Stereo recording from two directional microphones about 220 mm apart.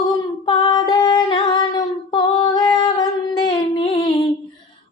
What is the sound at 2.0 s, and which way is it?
Female singing, 20° left (ahead or behind).